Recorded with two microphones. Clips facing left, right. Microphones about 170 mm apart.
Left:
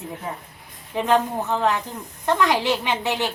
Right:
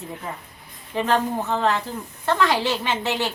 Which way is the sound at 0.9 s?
15° left (ahead or behind).